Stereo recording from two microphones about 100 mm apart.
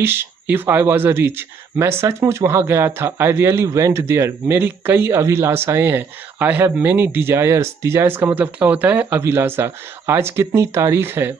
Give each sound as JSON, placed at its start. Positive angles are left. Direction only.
{"t": 0.0, "sound": "speech", "side_deg": -20}